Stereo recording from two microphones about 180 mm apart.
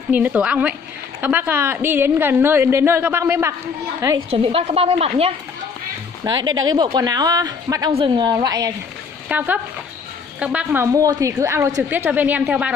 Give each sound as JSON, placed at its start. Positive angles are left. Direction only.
{"t": 0.1, "sound": "a woman's voice", "side_deg": -10}
{"t": 4.3, "sound": "a woman's voice", "side_deg": -35}
{"t": 6.2, "sound": "speech", "side_deg": -25}
{"t": 9.3, "sound": "a woman's voice", "side_deg": -10}